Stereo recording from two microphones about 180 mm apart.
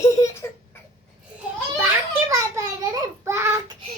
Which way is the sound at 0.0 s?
20° left (ahead or behind).